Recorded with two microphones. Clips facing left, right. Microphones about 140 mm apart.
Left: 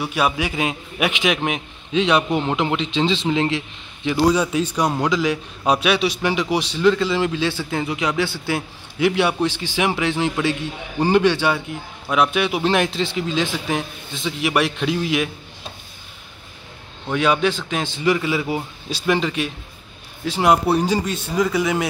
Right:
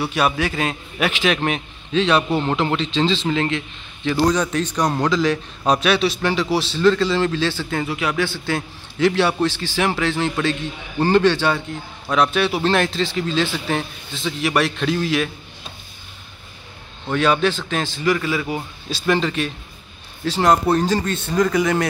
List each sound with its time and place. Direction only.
0.0 s a man's voice: 10° left (ahead or behind)
17.1 s a man's voice: 10° left (ahead or behind)